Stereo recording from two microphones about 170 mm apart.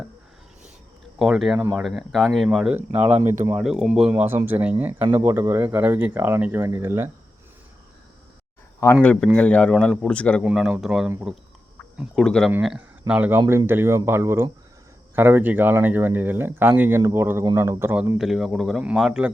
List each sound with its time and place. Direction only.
1.2 s speech: centre (ahead or behind)
8.8 s a man's voice: 10° left (ahead or behind); by 11.3 s 10° right (ahead or behind)
11.9 s speech: 5° left (ahead or behind); by 18.2 s 15° right (ahead or behind)
18.2 s speech: centre (ahead or behind)